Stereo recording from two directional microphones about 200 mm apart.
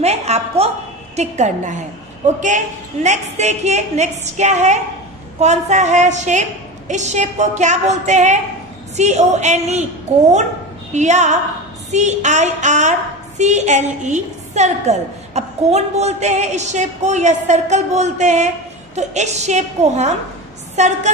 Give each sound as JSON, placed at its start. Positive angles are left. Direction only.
{"t": 0.0, "sound": "a sound", "side_deg": -30}
{"t": 1.1, "sound": "a woman's voice", "side_deg": -35}
{"t": 10.9, "sound": "a woman's voice", "side_deg": -35}